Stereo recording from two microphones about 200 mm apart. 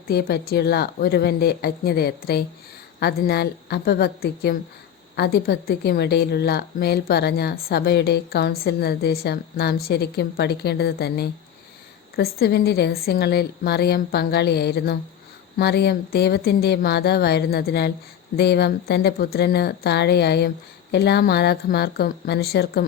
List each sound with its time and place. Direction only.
0.1 s a woman's voice: 50° left (ahead or behind)